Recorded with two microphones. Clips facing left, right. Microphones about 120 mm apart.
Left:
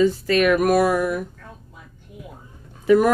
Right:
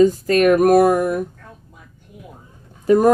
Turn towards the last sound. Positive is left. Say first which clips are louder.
# right 2 dB
turn(degrees=-40)  # may be behind; listen again after turning